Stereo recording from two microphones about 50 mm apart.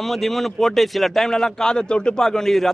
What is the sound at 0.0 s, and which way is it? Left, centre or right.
A man's voice, centre.